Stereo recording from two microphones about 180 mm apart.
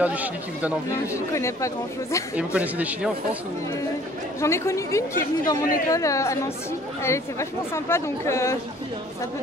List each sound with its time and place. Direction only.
0.0 s speech: 10° right (ahead or behind)
1.0 s speech: 15° left (ahead or behind)
2.3 s speech: 10° right (ahead or behind)
4.4 s speech: 15° left (ahead or behind)